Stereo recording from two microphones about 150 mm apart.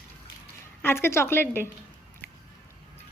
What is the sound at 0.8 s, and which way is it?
Speech, 15° left (ahead or behind).